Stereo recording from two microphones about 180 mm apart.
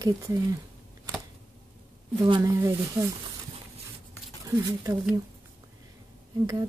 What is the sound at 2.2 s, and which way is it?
Speech, 20° right (ahead or behind).